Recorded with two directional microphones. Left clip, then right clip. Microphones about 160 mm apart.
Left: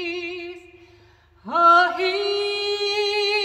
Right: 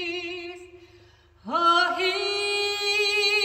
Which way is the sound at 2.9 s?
15° right (ahead or behind).